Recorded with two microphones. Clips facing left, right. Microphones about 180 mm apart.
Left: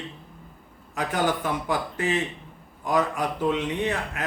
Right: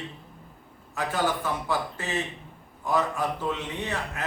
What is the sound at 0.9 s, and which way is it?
A man's voice, 15° left (ahead or behind).